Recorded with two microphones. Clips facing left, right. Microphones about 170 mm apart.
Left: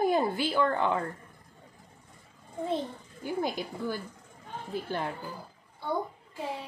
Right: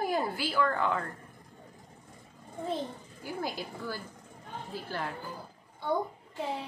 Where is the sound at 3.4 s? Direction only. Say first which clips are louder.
Left 3 dB; 20° left (ahead or behind).